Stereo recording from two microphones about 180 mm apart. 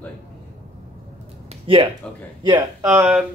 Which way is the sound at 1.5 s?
30° right (ahead or behind).